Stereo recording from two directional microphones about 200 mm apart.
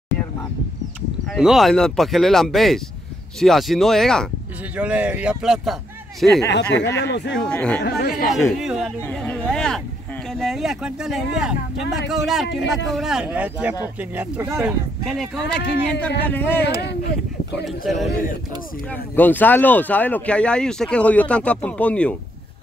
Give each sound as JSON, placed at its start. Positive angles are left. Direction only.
{"t": 1.3, "sound": "speech", "side_deg": 0}
{"t": 6.5, "sound": "speech", "side_deg": 60}
{"t": 7.3, "sound": "speech", "side_deg": 5}
{"t": 15.0, "sound": "speech", "side_deg": 0}
{"t": 17.6, "sound": "speech", "side_deg": 0}